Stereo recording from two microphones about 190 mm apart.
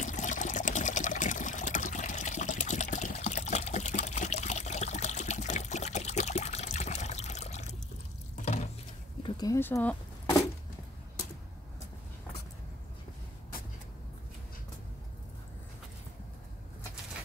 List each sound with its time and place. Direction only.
0.0 s water: 40° left (ahead or behind)
3.2 s trickle: 40° left (ahead or behind)
8.4 s a sound: 35° left (ahead or behind)
9.2 s speech: 20° left (ahead or behind)